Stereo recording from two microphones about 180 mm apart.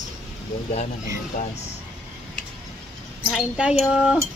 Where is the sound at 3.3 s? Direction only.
5° right (ahead or behind).